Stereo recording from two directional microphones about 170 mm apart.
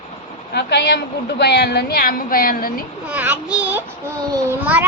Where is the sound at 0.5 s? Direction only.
80° left; by 2.8 s 60° left (ahead or behind).